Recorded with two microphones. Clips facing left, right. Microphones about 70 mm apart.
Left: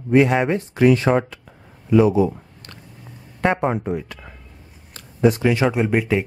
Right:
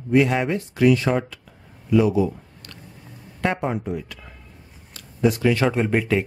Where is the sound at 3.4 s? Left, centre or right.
Left.